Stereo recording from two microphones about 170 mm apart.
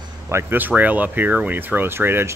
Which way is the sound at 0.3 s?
15° right (ahead or behind).